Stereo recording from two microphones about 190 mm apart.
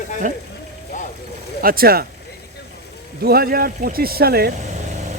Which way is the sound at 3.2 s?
55° right (ahead or behind).